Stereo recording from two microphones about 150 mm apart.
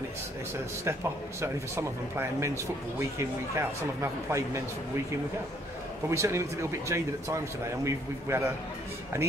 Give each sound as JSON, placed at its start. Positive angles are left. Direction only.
{"t": 1.4, "sound": "speech", "side_deg": -20}
{"t": 6.0, "sound": "speech", "side_deg": -20}